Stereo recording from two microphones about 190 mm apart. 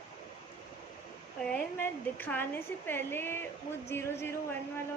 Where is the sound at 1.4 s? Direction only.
5° left (ahead or behind).